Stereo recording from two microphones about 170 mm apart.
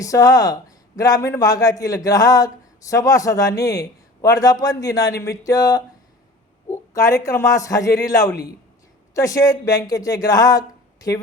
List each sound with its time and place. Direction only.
0.0 s a man's voice: 20° left (ahead or behind)